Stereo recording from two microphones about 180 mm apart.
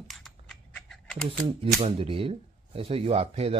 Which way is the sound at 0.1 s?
Centre (ahead or behind).